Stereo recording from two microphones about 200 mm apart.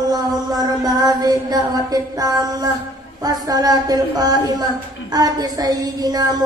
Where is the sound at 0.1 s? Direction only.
20° right (ahead or behind).